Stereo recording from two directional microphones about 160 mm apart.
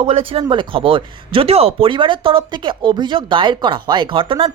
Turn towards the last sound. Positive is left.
turn(degrees=-35)  # may be behind; listen again after turning